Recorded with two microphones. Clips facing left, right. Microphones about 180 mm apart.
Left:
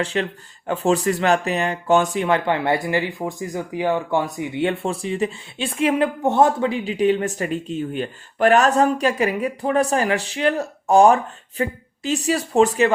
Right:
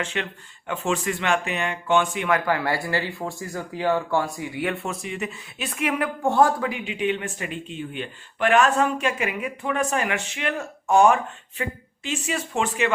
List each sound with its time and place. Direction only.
0.0 s speech: 35° left (ahead or behind)